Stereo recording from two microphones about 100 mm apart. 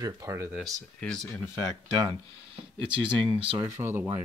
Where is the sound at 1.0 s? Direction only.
5° left (ahead or behind).